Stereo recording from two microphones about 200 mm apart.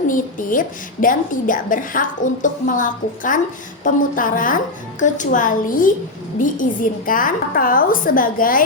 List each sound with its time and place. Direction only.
0.1 s a woman's voice: 40° left (ahead or behind)